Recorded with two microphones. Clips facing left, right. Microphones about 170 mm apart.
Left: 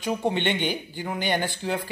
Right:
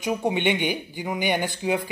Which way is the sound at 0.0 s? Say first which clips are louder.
Right 2 dB; 10° right (ahead or behind).